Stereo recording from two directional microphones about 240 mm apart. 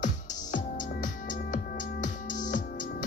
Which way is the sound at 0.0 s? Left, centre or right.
Left.